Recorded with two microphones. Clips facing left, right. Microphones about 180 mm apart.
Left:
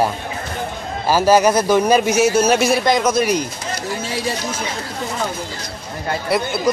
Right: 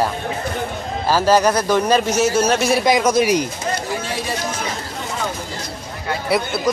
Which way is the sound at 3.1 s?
15° right (ahead or behind).